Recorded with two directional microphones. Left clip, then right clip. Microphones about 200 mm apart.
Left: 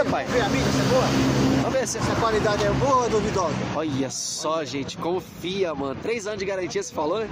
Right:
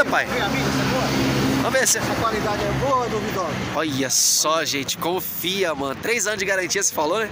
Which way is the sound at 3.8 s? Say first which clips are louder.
Right 6 dB; 5° left (ahead or behind).